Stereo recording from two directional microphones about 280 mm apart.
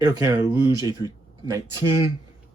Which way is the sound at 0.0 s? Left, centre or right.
Centre.